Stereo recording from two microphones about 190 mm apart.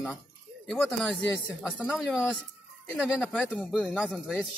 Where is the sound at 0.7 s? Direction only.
Centre (ahead or behind).